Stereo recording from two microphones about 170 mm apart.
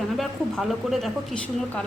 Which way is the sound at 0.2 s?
Centre (ahead or behind).